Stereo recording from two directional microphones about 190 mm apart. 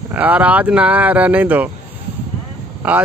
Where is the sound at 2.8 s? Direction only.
5° right (ahead or behind).